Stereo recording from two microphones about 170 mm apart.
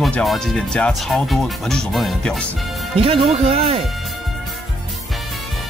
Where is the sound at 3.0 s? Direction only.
35° right (ahead or behind).